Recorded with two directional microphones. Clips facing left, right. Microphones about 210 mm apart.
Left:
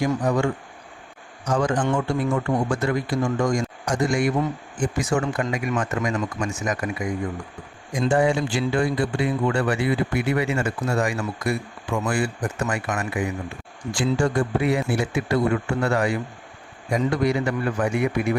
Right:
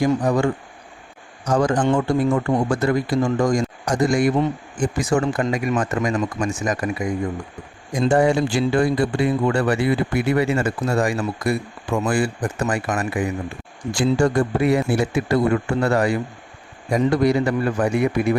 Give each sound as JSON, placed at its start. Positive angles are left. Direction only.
{"t": 0.0, "sound": "speech", "side_deg": -35}
{"t": 7.9, "sound": "speech", "side_deg": -40}